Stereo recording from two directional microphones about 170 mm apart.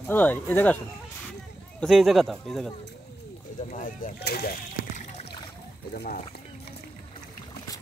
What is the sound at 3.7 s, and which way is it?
Speech, 55° left (ahead or behind).